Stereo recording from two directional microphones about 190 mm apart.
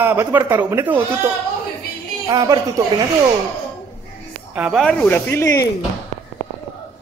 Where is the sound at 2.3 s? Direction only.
20° right (ahead or behind).